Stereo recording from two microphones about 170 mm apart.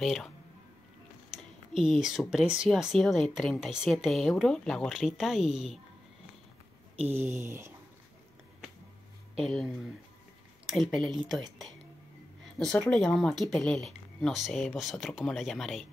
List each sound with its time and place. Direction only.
0.0 s speech: centre (ahead or behind)
1.3 s a sound: centre (ahead or behind)
2.5 s speech: 5° right (ahead or behind)
7.1 s a sound: 15° right (ahead or behind)
9.4 s speech: centre (ahead or behind)
10.7 s speech: centre (ahead or behind)
12.7 s speech: 5° left (ahead or behind)